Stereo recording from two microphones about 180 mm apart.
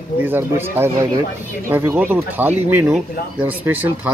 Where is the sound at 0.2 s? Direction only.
10° right (ahead or behind).